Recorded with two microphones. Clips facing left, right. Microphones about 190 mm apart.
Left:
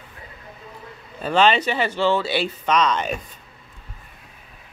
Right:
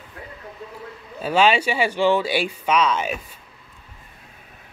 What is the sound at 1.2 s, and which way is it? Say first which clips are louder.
Speech: even; 10° right (ahead or behind).